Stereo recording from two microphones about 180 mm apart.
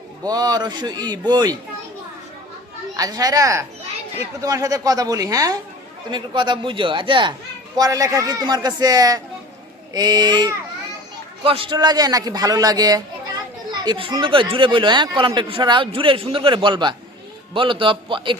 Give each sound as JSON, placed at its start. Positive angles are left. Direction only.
{"t": 0.3, "sound": "a man's voice", "side_deg": -20}
{"t": 2.9, "sound": "a man's voice", "side_deg": -20}